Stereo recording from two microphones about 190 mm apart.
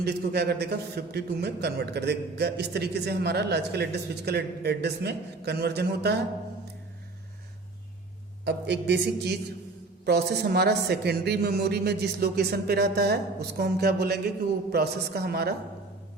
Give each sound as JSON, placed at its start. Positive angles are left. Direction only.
{"t": 0.0, "sound": "a man's voice", "side_deg": -55}
{"t": 8.4, "sound": "a man's voice", "side_deg": -65}